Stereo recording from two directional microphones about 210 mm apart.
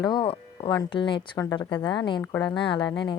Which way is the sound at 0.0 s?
20° left (ahead or behind).